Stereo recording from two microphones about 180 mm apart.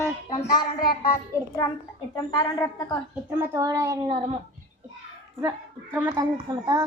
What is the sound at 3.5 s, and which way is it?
Speech, 15° right (ahead or behind).